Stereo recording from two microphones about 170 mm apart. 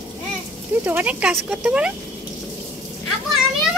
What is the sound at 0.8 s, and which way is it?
Speech, 10° right (ahead or behind).